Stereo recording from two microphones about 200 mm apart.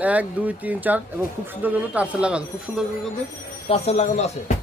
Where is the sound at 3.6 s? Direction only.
30° left (ahead or behind).